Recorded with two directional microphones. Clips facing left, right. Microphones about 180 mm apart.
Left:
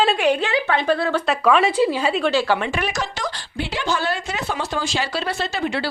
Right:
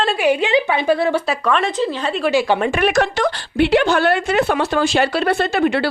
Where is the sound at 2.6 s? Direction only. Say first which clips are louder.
Right 8 dB; 55° right (ahead or behind).